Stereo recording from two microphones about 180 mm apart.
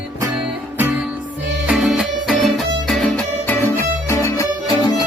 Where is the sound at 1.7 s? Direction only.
5° right (ahead or behind).